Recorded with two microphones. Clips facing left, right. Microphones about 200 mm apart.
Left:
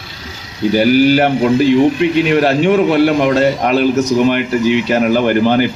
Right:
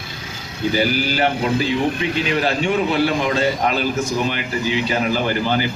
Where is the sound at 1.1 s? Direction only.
60° left (ahead or behind).